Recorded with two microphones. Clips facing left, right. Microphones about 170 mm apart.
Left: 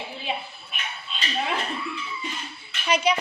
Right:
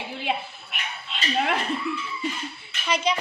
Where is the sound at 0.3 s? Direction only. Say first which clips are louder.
Right 4 dB; 75° right (ahead or behind).